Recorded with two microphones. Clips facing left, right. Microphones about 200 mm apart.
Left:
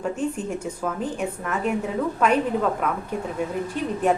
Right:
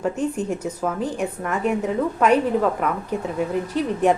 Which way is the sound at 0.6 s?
5° right (ahead or behind).